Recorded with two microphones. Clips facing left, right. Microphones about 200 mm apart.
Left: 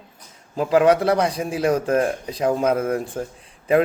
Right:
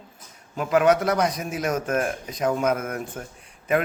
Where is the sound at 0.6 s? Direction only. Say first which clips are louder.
Left 3 dB; 30° left (ahead or behind).